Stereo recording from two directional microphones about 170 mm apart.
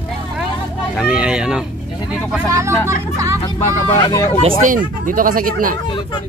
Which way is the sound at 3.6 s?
20° left (ahead or behind).